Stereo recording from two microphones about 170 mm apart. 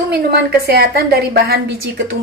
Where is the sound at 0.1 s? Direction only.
65° right (ahead or behind).